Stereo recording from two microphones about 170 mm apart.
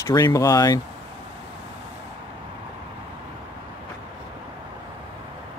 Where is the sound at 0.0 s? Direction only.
20° left (ahead or behind).